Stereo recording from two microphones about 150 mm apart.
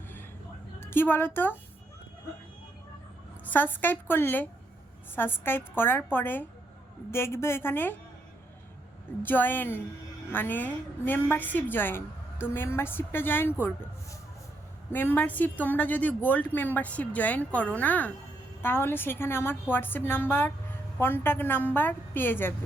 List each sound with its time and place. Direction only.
0.8 s a woman's voice: 15° left (ahead or behind)
3.4 s a woman's voice: 10° left (ahead or behind)
9.2 s a woman's voice: 15° left (ahead or behind)